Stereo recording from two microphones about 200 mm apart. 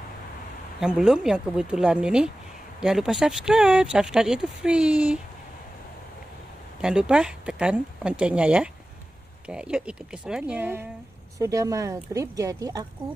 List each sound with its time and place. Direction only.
0.7 s speech: 5° right (ahead or behind)
6.8 s speech: 5° right (ahead or behind)